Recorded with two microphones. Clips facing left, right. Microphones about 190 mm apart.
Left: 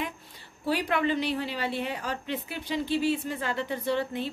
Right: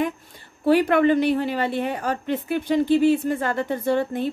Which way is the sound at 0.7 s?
55° right (ahead or behind).